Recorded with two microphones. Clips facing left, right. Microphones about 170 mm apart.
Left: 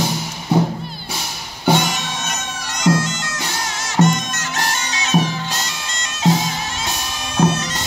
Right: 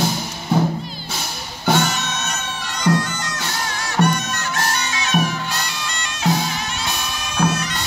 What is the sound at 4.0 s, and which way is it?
Music, 20° left (ahead or behind).